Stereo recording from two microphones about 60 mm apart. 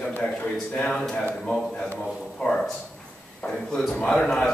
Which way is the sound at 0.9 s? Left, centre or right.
Centre.